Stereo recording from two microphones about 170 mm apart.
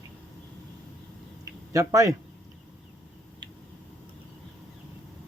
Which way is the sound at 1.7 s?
20° right (ahead or behind).